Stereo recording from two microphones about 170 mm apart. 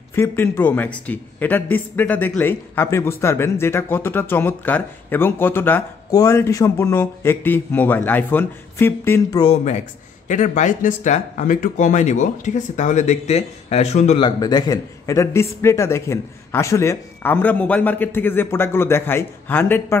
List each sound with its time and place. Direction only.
0.1 s speech: 15° left (ahead or behind)
9.4 s speech: 35° left (ahead or behind)
10.2 s speech: 45° left (ahead or behind)
14.2 s speech: 25° left (ahead or behind)